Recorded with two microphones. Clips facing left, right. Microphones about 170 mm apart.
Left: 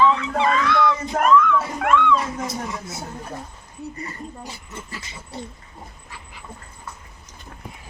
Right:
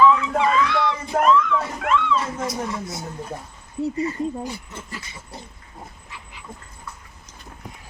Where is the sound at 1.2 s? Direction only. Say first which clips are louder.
Left 1 dB; 55° left (ahead or behind).